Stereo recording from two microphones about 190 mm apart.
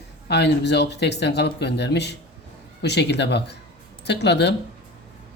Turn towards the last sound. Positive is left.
turn(degrees=65)  # may be behind; listen again after turning